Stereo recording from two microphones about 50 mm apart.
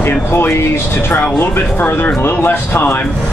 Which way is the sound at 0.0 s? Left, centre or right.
Left.